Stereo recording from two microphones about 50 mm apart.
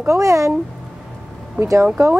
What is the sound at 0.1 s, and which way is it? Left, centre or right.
Speech, right.